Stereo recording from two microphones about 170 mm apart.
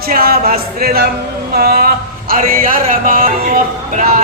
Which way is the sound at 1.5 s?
60° right (ahead or behind).